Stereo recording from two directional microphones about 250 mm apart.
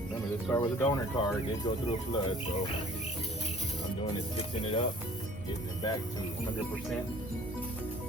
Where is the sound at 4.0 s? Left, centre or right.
Left.